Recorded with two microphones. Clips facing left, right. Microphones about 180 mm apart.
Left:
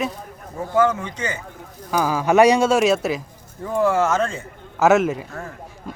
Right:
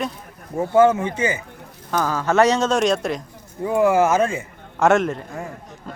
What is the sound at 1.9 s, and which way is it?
Speech, 10° left (ahead or behind).